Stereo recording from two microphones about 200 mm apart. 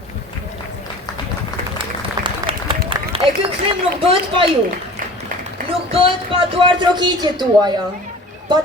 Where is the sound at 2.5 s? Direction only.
25° right (ahead or behind).